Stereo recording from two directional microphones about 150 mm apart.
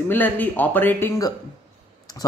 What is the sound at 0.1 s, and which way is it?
Speech, 10° left (ahead or behind).